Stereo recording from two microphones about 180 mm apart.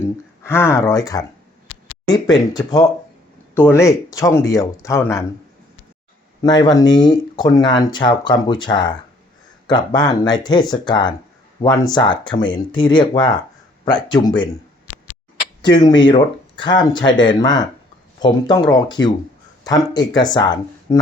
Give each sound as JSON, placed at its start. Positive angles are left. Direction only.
{"t": 0.0, "sound": "speech", "side_deg": 15}
{"t": 6.4, "sound": "speech", "side_deg": 20}
{"t": 15.6, "sound": "speech", "side_deg": 25}
{"t": 19.0, "sound": "speech", "side_deg": 90}
{"t": 19.6, "sound": "speech", "side_deg": 20}